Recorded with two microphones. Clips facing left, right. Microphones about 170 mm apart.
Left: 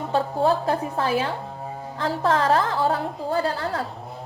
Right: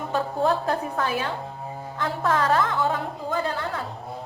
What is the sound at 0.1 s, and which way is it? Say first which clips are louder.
A woman's voice: left 2 dB; 30° left (ahead or behind).